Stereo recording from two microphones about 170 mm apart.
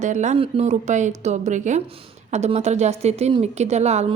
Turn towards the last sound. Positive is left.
turn(degrees=-40)  # may be behind; listen again after turning